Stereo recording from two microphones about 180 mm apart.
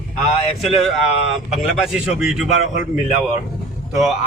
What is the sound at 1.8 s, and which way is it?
Speech, 5° right (ahead or behind).